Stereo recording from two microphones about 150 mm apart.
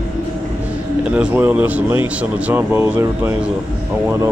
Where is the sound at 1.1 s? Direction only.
10° right (ahead or behind).